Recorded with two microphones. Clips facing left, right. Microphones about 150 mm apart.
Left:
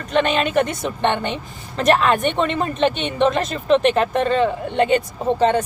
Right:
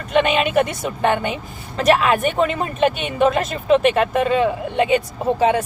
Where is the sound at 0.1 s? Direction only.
5° right (ahead or behind).